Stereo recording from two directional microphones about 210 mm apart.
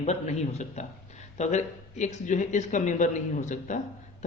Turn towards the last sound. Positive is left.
turn(degrees=35)  # may be behind; listen again after turning